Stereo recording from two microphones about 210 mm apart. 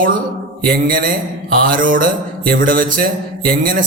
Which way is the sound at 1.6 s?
40° right (ahead or behind).